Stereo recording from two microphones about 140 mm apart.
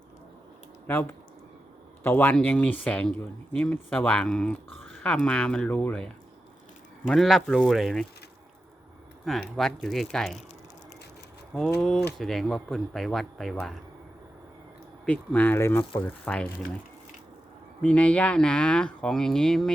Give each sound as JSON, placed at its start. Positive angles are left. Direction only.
{"t": 0.9, "sound": "speech", "side_deg": 15}
{"t": 7.1, "sound": "speech", "side_deg": 0}
{"t": 9.6, "sound": "speech", "side_deg": 0}
{"t": 11.5, "sound": "speech", "side_deg": 5}
{"t": 15.0, "sound": "speech", "side_deg": 10}
{"t": 17.8, "sound": "speech", "side_deg": 10}